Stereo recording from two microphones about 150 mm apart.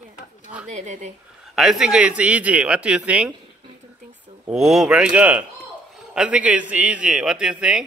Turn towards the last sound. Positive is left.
turn(degrees=-5)  # may be behind; listen again after turning